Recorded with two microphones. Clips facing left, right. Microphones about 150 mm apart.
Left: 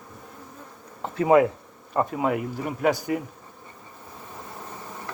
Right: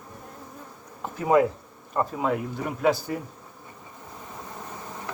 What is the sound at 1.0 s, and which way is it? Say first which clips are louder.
Insect: left 3 dB; 70° left (ahead or behind).